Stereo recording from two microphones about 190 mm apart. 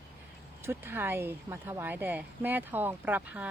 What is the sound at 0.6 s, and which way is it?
A woman's voice, 10° right (ahead or behind).